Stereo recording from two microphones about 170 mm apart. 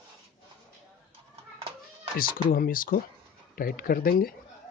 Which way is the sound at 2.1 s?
60° left (ahead or behind).